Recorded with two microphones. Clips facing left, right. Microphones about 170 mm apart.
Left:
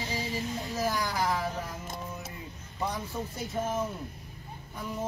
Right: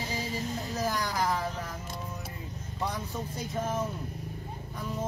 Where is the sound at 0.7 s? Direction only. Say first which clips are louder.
Left 1 dB; 5° left (ahead or behind).